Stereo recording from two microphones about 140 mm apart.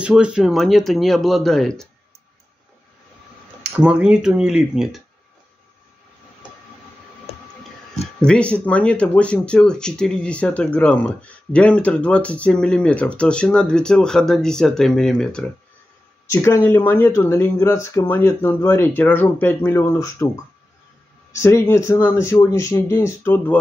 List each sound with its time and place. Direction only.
0.0 s speech: 5° right (ahead or behind)
3.7 s speech: 5° right (ahead or behind)
8.2 s speech: 10° left (ahead or behind)
16.3 s speech: 20° left (ahead or behind)
21.4 s speech: 20° left (ahead or behind)